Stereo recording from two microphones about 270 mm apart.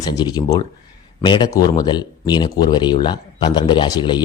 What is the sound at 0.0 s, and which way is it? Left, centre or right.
A man's voice, centre.